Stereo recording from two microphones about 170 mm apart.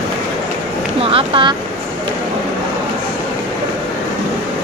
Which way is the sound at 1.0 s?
35° right (ahead or behind).